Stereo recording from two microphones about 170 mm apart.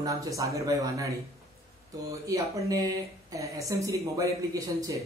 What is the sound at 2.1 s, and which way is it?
Speech, 20° right (ahead or behind).